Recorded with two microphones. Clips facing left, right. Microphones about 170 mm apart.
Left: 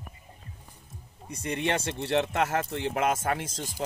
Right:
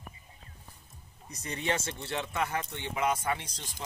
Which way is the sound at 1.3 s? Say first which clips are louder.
Left 4 dB; 55° left (ahead or behind).